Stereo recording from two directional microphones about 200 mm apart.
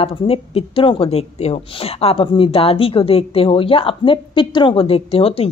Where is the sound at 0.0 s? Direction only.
30° left (ahead or behind).